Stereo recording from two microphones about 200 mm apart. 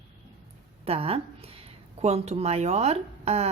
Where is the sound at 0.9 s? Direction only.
30° right (ahead or behind).